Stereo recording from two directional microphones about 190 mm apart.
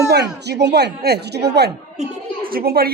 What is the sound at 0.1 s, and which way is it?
Speech, 60° right (ahead or behind).